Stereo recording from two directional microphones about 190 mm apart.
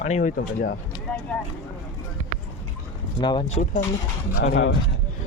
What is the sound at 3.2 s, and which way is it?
Speech, 25° left (ahead or behind).